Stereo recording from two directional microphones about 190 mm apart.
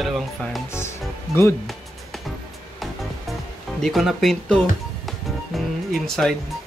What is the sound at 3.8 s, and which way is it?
Speech, centre (ahead or behind).